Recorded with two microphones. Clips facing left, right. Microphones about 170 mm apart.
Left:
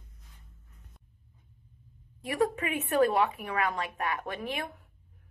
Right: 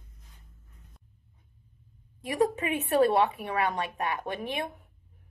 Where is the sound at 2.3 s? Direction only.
20° right (ahead or behind).